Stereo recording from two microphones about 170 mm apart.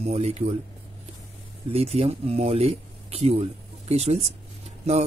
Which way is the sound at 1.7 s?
35° right (ahead or behind).